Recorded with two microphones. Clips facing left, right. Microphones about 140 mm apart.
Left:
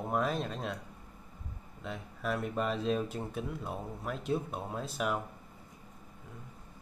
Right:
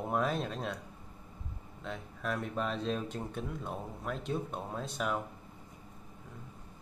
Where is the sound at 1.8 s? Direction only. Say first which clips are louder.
Left 1 dB; centre (ahead or behind).